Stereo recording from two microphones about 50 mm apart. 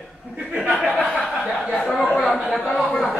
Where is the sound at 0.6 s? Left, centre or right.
Left.